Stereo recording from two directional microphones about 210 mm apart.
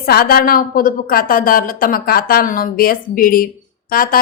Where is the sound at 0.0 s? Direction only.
45° left (ahead or behind).